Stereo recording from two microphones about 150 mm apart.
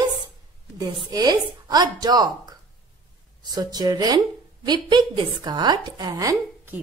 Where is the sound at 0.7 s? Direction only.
25° right (ahead or behind).